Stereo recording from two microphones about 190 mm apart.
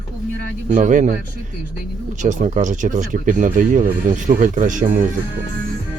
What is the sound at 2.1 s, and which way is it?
Speech, 40° right (ahead or behind).